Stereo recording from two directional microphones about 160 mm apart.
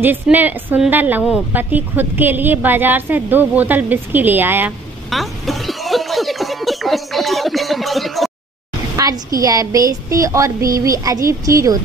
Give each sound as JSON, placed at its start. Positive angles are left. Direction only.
{"t": 0.0, "sound": "a woman's voice", "side_deg": -10}
{"t": 5.1, "sound": "music", "side_deg": 0}
{"t": 8.9, "sound": "a woman's voice", "side_deg": -20}